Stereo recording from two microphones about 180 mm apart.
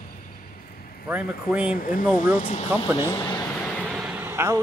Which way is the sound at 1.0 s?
5° right (ahead or behind).